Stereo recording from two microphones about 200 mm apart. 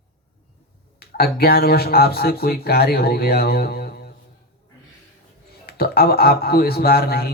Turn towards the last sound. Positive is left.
turn(degrees=50)  # may be behind; listen again after turning